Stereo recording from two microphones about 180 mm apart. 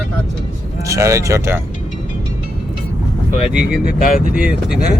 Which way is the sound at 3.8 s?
50° left (ahead or behind).